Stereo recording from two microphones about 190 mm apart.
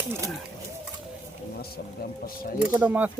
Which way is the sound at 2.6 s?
10° right (ahead or behind).